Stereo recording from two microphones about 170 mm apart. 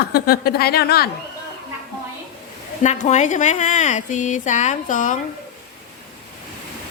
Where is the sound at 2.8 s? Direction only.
45° left (ahead or behind).